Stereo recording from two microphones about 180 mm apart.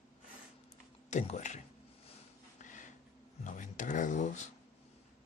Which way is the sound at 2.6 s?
45° left (ahead or behind).